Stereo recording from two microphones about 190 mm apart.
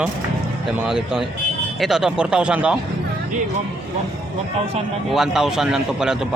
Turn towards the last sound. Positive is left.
turn(degrees=-5)  # may be behind; listen again after turning